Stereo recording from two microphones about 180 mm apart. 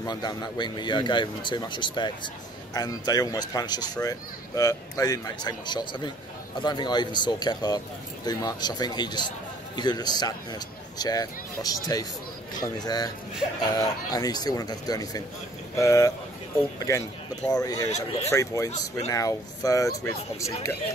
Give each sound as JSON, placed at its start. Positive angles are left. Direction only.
{"t": 0.0, "sound": "a child's voice", "side_deg": 25}
{"t": 17.5, "sound": "a child's voice", "side_deg": 20}
{"t": 17.8, "sound": "speech", "side_deg": 35}
{"t": 18.3, "sound": "a child's voice", "side_deg": 15}